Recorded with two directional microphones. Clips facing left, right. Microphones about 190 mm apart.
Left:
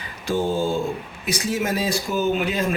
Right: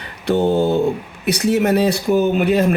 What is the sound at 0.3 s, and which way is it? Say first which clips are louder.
Speech: right 6 dB; 65° right (ahead or behind).